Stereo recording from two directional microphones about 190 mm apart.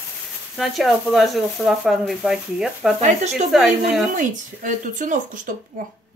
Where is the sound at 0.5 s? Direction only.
Centre (ahead or behind).